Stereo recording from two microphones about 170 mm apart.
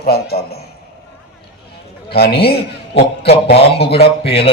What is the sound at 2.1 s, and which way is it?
Speech, 70° left (ahead or behind).